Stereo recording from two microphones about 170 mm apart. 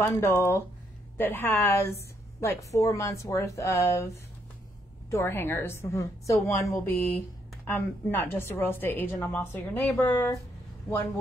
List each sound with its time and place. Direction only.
0.0 s a woman's voice: 15° left (ahead or behind)
5.1 s a woman's voice: 15° left (ahead or behind)